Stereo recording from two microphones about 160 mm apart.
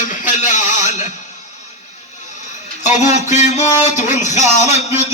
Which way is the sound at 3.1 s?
45° left (ahead or behind).